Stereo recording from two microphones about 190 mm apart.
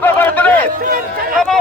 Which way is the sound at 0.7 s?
50° right (ahead or behind).